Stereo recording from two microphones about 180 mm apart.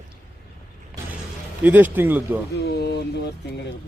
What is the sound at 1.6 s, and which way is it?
Speech, 10° right (ahead or behind).